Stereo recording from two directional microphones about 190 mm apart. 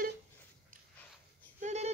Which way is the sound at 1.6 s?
35° right (ahead or behind).